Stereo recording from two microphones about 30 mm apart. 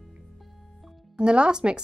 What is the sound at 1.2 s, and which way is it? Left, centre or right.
Speech, right.